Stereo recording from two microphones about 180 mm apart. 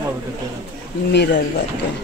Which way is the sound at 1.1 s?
70° left (ahead or behind).